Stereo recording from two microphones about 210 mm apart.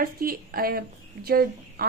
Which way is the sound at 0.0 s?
45° right (ahead or behind).